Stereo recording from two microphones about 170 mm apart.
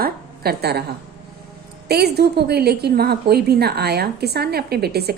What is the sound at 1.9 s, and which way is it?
A woman's voice, 70° right (ahead or behind).